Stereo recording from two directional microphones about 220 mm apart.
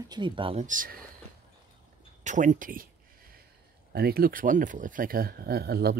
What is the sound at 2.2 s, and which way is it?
Speech, 35° right (ahead or behind).